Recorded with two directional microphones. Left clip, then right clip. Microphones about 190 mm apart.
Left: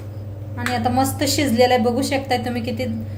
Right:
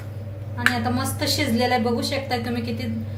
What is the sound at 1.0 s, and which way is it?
A woman's voice, 50° left (ahead or behind).